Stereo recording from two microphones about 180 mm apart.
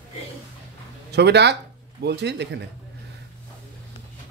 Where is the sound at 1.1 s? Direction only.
70° right (ahead or behind).